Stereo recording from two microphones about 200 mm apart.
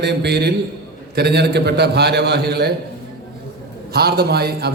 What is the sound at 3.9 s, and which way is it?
Speech, 50° right (ahead or behind).